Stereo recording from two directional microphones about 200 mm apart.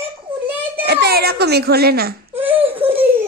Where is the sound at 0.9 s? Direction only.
55° right (ahead or behind).